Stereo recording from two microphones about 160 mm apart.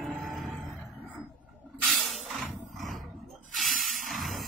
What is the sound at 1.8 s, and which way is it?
Hiss, centre (ahead or behind).